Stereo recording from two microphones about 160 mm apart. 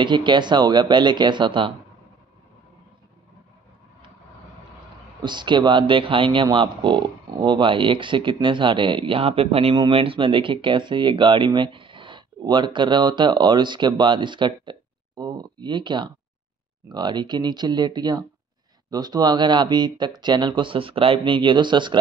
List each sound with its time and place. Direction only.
0.0 s speech: 30° right (ahead or behind)
5.2 s speech: 30° right (ahead or behind)